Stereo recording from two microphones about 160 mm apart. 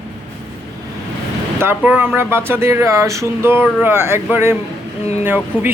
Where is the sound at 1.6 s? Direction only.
15° right (ahead or behind).